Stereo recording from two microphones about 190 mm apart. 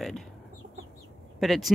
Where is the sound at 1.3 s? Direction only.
Centre (ahead or behind).